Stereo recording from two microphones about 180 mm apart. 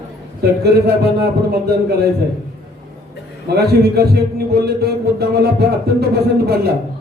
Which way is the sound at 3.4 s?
65° right (ahead or behind).